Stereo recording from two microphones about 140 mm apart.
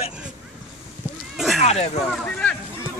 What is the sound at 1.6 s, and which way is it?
Speech, 50° left (ahead or behind).